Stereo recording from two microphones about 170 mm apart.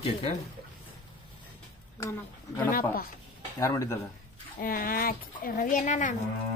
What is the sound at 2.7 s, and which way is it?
Speech, 55° left (ahead or behind).